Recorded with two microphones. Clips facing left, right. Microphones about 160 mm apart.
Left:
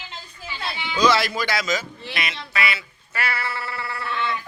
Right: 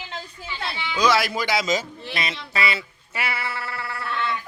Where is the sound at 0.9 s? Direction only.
10° right (ahead or behind).